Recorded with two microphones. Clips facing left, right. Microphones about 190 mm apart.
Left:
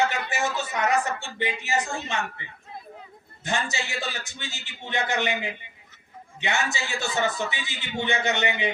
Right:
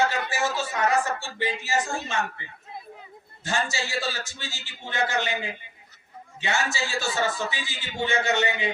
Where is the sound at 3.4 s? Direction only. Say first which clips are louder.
Right 1 dB; 20° left (ahead or behind).